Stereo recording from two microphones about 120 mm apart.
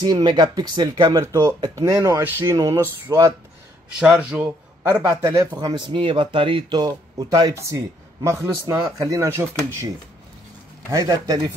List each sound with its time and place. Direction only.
0.0 s a man's voice: 35° right (ahead or behind)
4.0 s speech: 5° right (ahead or behind)
5.0 s a man's voice: 30° right (ahead or behind)
7.5 s a man's voice: 25° right (ahead or behind)
10.9 s speech: 30° right (ahead or behind)